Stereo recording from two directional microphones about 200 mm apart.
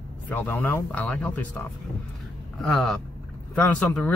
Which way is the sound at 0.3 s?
10° left (ahead or behind).